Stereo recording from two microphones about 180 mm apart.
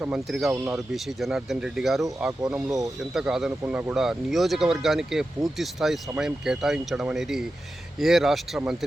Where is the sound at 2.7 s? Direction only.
20° right (ahead or behind).